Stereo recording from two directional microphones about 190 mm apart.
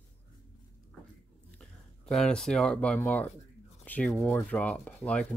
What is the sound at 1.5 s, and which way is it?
Speech, 5° left (ahead or behind).